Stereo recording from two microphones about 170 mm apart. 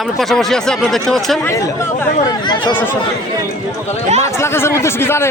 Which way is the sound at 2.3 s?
25° left (ahead or behind).